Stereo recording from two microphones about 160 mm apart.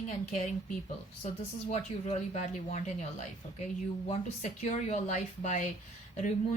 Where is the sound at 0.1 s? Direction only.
50° left (ahead or behind).